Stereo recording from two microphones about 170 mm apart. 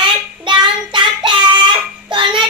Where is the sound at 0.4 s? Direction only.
25° right (ahead or behind).